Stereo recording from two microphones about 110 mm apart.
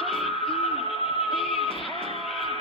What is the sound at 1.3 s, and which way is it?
Music, 55° left (ahead or behind).